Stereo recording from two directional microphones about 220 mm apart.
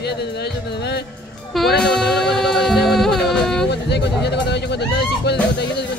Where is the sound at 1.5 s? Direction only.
Centre (ahead or behind).